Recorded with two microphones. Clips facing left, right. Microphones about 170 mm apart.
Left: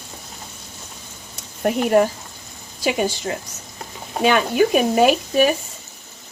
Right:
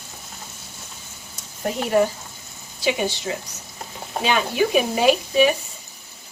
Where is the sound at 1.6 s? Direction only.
55° left (ahead or behind).